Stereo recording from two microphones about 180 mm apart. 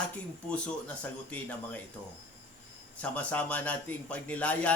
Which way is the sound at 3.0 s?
10° left (ahead or behind).